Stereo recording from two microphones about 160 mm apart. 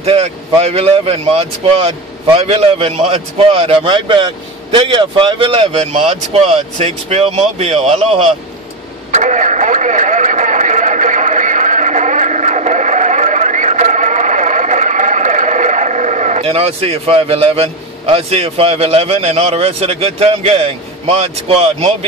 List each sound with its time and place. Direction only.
0.0 s speech: 40° right (ahead or behind)
9.1 s radio: 50° right (ahead or behind)